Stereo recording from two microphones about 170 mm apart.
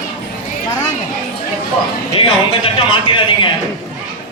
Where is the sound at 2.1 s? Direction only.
30° left (ahead or behind).